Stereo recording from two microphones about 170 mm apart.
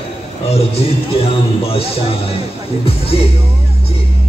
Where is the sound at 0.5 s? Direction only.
35° left (ahead or behind).